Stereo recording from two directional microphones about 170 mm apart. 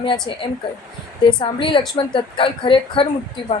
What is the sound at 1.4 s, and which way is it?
A woman's voice, 30° left (ahead or behind).